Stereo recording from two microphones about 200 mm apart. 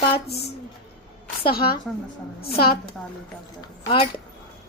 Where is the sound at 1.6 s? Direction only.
25° left (ahead or behind).